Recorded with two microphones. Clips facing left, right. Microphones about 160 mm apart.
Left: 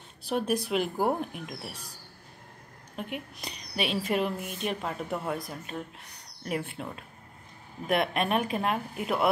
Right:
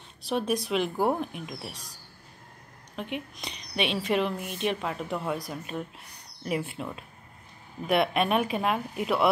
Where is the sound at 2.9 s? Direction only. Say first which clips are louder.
Right 2 dB; 50° left (ahead or behind).